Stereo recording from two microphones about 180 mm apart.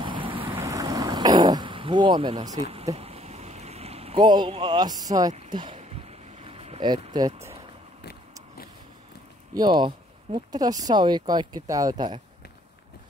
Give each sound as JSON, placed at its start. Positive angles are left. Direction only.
{"t": 0.0, "sound": "waves", "side_deg": -30}
{"t": 0.6, "sound": "throat clearing", "side_deg": -20}
{"t": 2.6, "sound": "a sound", "side_deg": -35}
{"t": 4.7, "sound": "speech", "side_deg": -20}
{"t": 5.5, "sound": "boat", "side_deg": -30}
{"t": 9.5, "sound": "speech", "side_deg": -25}